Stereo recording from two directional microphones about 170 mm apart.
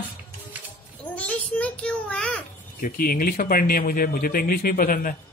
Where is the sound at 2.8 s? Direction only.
60° left (ahead or behind).